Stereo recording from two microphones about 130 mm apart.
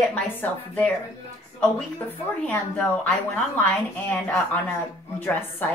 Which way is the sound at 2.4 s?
10° left (ahead or behind).